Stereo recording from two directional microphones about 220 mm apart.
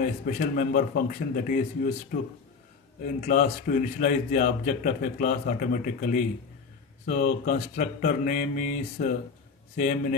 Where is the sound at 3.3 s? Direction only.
40° left (ahead or behind).